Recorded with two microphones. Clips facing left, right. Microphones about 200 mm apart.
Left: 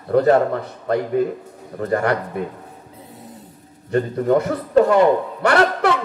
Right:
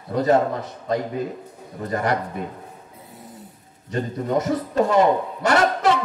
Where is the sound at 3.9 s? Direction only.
60° left (ahead or behind).